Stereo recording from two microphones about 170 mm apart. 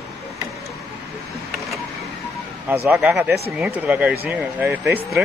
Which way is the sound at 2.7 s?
10° right (ahead or behind).